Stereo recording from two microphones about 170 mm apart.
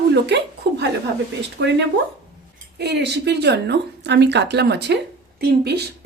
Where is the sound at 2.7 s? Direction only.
75° right (ahead or behind).